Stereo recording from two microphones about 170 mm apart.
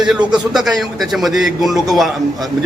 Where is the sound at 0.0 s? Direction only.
5° right (ahead or behind).